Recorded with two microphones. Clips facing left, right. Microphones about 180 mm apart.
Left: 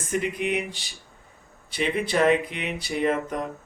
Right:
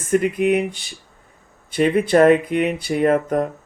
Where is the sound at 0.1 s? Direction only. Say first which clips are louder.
Right 9 dB; 50° right (ahead or behind).